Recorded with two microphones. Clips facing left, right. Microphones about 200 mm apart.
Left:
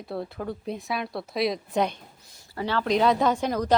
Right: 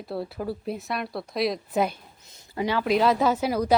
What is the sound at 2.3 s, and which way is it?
Speech, 20° right (ahead or behind).